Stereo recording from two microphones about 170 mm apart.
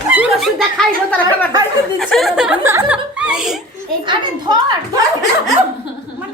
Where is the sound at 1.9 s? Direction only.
Centre (ahead or behind).